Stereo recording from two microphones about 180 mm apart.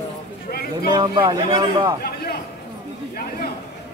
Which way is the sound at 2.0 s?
60° left (ahead or behind).